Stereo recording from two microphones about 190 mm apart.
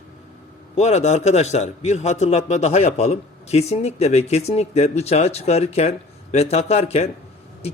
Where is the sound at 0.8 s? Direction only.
35° left (ahead or behind).